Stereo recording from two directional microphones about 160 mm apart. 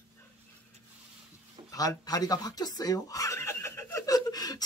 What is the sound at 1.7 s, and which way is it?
Speech, 25° left (ahead or behind).